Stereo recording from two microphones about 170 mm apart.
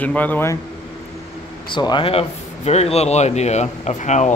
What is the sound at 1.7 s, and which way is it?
A man's voice, 25° left (ahead or behind).